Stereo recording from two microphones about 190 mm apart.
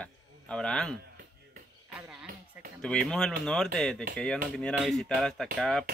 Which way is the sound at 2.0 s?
5° right (ahead or behind).